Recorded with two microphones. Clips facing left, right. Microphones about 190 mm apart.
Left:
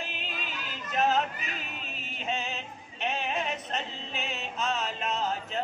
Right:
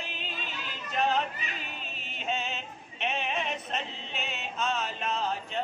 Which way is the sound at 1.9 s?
Centre (ahead or behind).